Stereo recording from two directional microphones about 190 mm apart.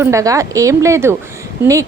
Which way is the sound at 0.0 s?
15° right (ahead or behind).